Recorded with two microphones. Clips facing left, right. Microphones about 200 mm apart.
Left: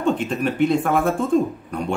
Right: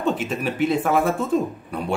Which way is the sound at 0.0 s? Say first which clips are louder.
Left 2 dB; 5° right (ahead or behind).